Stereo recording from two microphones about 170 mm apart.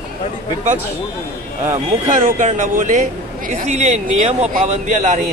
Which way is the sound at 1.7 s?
50° right (ahead or behind).